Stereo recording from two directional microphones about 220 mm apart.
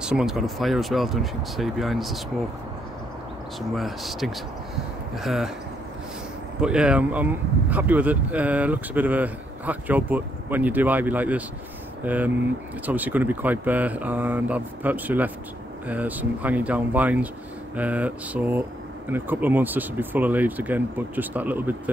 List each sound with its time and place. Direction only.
0.0 s speech: 5° right (ahead or behind)
3.7 s speech: centre (ahead or behind)
6.6 s speech: 5° right (ahead or behind)